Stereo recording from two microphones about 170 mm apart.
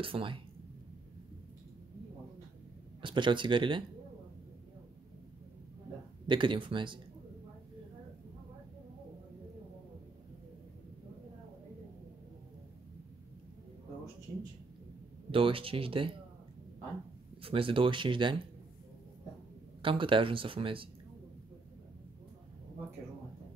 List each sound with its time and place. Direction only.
0.0 s speech: 30° right (ahead or behind)
3.0 s speech: 30° right (ahead or behind)
6.2 s speech: 30° right (ahead or behind)
15.3 s speech: 30° right (ahead or behind)
17.4 s speech: 30° right (ahead or behind)
19.8 s speech: 30° right (ahead or behind)